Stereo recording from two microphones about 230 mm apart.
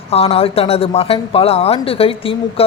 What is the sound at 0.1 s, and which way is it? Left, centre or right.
Speech, left.